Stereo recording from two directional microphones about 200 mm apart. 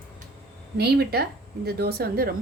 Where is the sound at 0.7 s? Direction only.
55° right (ahead or behind).